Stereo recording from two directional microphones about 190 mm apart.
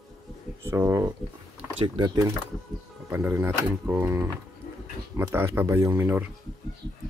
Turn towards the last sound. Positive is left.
turn(degrees=-10)  # may be behind; listen again after turning